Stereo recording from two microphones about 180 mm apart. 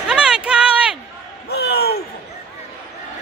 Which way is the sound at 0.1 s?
5° right (ahead or behind).